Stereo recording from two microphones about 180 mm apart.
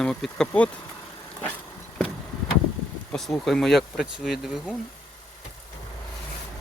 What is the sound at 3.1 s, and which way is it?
Speech, centre (ahead or behind).